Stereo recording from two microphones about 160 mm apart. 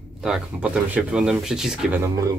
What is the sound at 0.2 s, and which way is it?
Speech, 5° right (ahead or behind).